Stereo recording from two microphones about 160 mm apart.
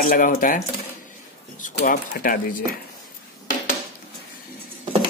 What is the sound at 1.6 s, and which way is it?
Speech, 60° left (ahead or behind).